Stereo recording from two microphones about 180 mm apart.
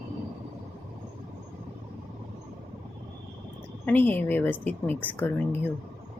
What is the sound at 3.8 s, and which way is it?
A woman's voice, 10° left (ahead or behind).